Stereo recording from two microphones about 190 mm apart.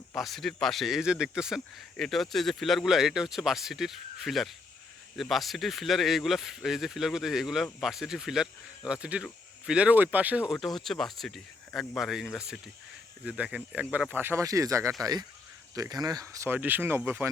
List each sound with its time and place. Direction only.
0.1 s speech: centre (ahead or behind)